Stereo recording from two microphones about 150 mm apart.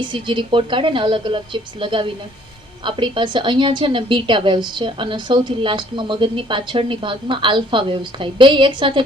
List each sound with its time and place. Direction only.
0.0 s a woman's voice: 35° right (ahead or behind)